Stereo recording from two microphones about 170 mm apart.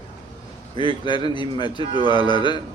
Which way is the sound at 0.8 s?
25° left (ahead or behind).